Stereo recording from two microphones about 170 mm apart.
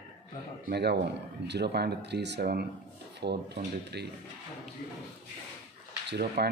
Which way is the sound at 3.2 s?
75° right (ahead or behind).